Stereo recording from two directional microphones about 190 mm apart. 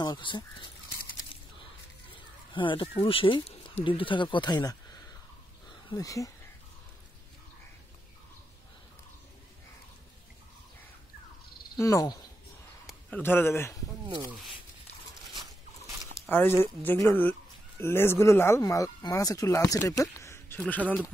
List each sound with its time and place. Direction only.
0.0 s speech: 25° left (ahead or behind)
2.5 s speech: 25° left (ahead or behind)
5.9 s speech: 20° left (ahead or behind)
11.8 s speech: 15° left (ahead or behind)
16.3 s speech: 10° left (ahead or behind)